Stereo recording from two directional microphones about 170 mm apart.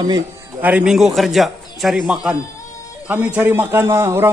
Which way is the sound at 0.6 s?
5° right (ahead or behind).